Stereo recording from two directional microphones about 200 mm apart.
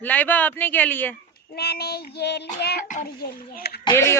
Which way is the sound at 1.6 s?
50° left (ahead or behind).